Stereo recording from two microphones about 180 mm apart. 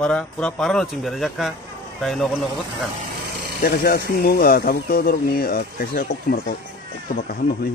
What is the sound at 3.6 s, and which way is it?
Speech, 60° left (ahead or behind).